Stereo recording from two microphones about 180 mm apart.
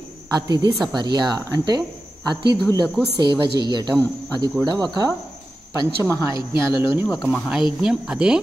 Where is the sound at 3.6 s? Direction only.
25° right (ahead or behind).